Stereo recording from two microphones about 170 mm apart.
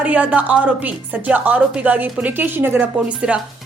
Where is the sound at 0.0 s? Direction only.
10° right (ahead or behind).